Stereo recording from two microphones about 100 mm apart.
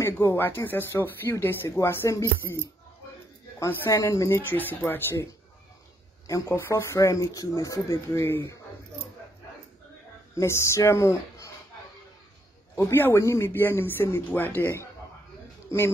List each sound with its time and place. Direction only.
0.0 s speech: 25° left (ahead or behind)
4.4 s speech: 20° left (ahead or behind)
10.3 s speech: 30° left (ahead or behind)
12.7 s speech: 25° left (ahead or behind)